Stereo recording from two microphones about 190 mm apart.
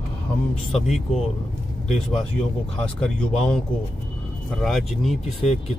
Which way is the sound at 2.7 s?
5° left (ahead or behind).